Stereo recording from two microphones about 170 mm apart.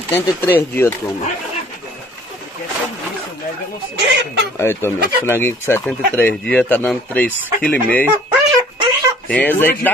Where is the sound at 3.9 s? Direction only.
85° right.